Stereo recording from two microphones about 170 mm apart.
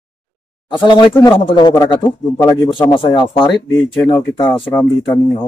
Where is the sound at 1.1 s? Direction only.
15° left (ahead or behind).